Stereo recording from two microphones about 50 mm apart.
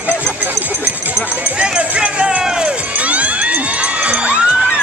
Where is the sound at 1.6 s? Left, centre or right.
Right.